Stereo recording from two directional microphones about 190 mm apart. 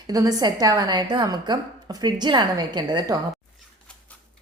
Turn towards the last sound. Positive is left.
turn(degrees=-20)  # may be behind; listen again after turning